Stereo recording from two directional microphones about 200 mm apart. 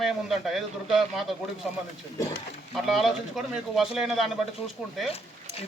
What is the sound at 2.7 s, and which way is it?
Speech, centre (ahead or behind).